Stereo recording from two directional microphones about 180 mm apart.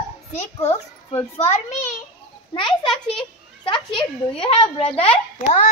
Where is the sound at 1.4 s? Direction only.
40° left (ahead or behind).